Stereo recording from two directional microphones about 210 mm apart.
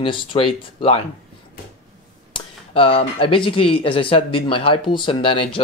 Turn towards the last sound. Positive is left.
turn(degrees=25)  # may be behind; listen again after turning